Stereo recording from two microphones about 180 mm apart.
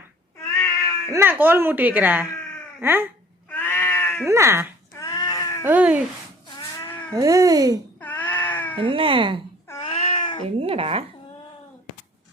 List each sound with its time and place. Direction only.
0.6 s cat: 15° left (ahead or behind)
1.1 s speech: 10° right (ahead or behind)
3.5 s cat: 10° left (ahead or behind)
4.3 s speech: 15° right (ahead or behind)
4.9 s a sound: 20° left (ahead or behind)
5.6 s speech: 10° right (ahead or behind)
6.8 s cat: 10° left (ahead or behind)
7.1 s speech: 20° right (ahead or behind)
8.0 s cat: 10° left (ahead or behind)
8.8 s speech: 30° right (ahead or behind)
9.8 s a sound: 30° left (ahead or behind)
10.6 s speech: 30° right (ahead or behind)